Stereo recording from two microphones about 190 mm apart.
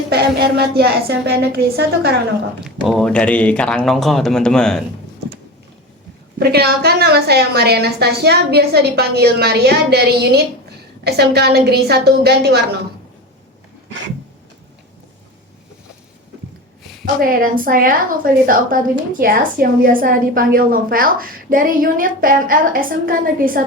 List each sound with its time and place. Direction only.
0.1 s a woman's voice: 60° right (ahead or behind)
2.6 s speech: centre (ahead or behind)
6.4 s a woman's voice: 55° right (ahead or behind)
17.2 s a woman's voice: 50° right (ahead or behind)